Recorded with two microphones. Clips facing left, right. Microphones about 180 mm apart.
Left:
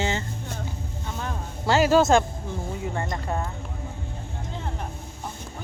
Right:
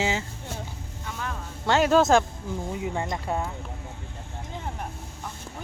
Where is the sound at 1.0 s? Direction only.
30° left (ahead or behind).